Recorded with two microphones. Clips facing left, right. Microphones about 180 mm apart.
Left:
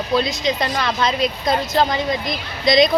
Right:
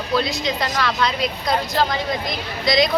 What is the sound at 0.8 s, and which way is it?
Speech, 20° left (ahead or behind).